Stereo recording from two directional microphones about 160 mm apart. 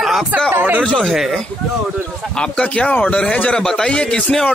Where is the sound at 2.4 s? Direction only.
5° left (ahead or behind).